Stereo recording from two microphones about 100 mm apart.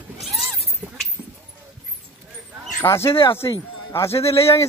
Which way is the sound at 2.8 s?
25° left (ahead or behind).